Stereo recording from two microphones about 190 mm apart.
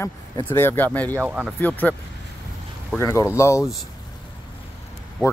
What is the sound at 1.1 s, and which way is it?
Speech, 10° right (ahead or behind).